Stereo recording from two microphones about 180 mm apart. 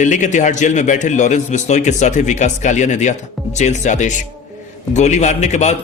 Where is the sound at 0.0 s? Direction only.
45° left (ahead or behind).